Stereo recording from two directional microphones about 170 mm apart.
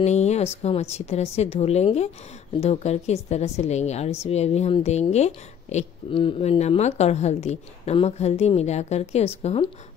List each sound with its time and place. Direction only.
0.0 s speech: 40° left (ahead or behind)